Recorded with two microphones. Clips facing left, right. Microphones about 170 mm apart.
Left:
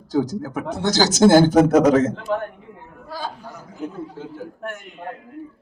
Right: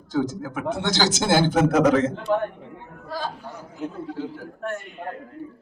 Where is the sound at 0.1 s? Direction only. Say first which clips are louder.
Left 3 dB; 40° left (ahead or behind).